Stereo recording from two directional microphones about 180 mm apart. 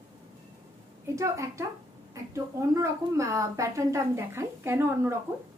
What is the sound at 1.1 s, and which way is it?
Speech, 15° right (ahead or behind).